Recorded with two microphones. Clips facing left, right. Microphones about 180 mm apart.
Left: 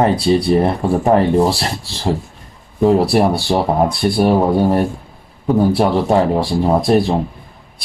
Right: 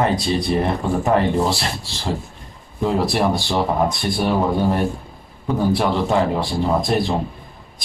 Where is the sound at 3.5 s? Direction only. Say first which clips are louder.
Left 4 dB; 35° left (ahead or behind).